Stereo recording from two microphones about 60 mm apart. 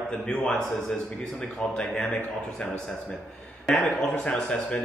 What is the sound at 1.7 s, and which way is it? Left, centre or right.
Speech, centre.